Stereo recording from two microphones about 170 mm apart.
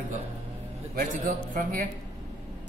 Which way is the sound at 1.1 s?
50° right (ahead or behind).